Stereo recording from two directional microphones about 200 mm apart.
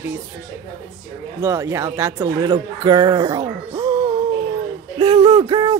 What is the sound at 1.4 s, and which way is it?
Speech, 15° right (ahead or behind).